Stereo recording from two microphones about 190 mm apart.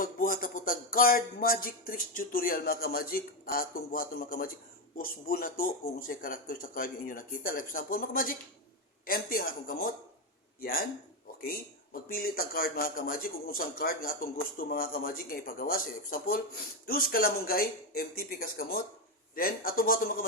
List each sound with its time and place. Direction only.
0.0 s speech: 50° left (ahead or behind)
12.0 s speech: 50° left (ahead or behind)